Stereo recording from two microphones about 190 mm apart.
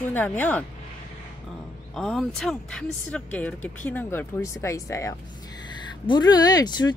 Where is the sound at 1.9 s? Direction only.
Centre (ahead or behind).